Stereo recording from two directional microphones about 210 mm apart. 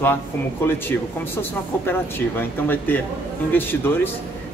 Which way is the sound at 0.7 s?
10° left (ahead or behind).